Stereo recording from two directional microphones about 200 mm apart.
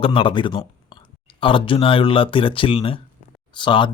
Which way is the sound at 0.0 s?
25° left (ahead or behind).